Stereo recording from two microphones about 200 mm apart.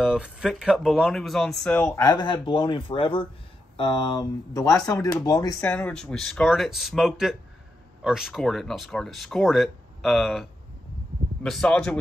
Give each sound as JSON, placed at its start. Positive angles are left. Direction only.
{"t": 0.0, "sound": "speech", "side_deg": -5}
{"t": 5.6, "sound": "speech", "side_deg": 5}
{"t": 11.4, "sound": "speech", "side_deg": 5}